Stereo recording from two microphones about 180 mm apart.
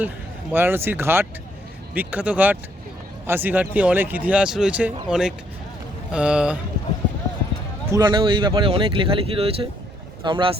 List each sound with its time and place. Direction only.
0.5 s speech: 10° right (ahead or behind)
7.9 s speech: 20° right (ahead or behind)